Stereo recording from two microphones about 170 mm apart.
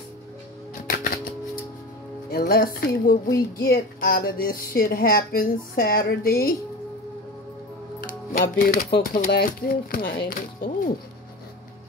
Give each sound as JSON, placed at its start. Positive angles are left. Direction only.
{"t": 0.8, "sound": "music", "side_deg": 55}
{"t": 2.3, "sound": "speech", "side_deg": 65}
{"t": 8.1, "sound": "speech", "side_deg": 55}